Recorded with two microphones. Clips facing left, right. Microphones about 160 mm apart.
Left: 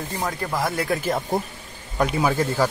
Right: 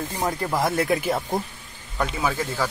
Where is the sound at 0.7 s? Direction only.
20° right (ahead or behind).